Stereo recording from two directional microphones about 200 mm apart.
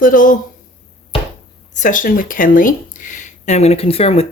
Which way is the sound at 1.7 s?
40° left (ahead or behind).